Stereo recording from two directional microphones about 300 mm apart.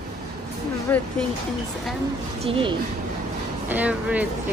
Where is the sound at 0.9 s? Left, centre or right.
Centre.